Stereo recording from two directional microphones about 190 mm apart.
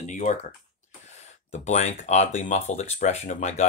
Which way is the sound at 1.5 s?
35° left (ahead or behind).